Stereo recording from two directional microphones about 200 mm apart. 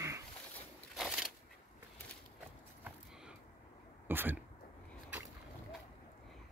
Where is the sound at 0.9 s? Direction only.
Centre (ahead or behind).